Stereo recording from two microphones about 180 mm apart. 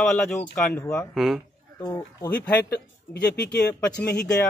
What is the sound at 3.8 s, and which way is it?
Speech, 15° left (ahead or behind).